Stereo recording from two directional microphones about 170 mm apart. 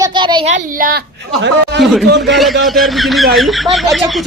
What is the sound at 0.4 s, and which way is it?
Speech, 50° right (ahead or behind).